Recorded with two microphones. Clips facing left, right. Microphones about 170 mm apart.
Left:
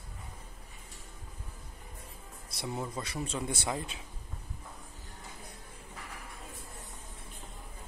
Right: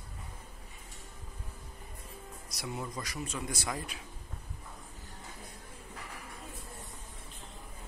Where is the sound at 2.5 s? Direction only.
30° left (ahead or behind).